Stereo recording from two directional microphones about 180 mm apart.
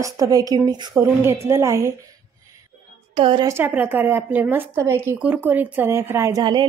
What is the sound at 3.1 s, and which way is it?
Speech, 25° right (ahead or behind).